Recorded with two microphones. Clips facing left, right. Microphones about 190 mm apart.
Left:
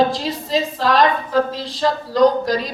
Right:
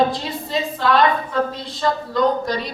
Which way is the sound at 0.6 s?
35° left (ahead or behind).